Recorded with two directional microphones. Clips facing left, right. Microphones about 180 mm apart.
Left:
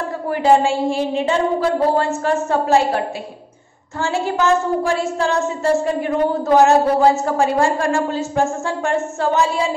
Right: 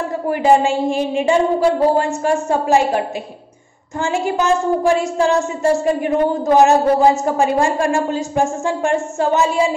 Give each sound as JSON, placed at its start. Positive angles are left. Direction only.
{"t": 0.3, "sound": "speech", "side_deg": -15}
{"t": 4.0, "sound": "speech", "side_deg": -15}